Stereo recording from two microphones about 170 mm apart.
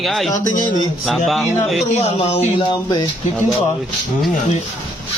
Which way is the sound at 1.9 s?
35° left (ahead or behind).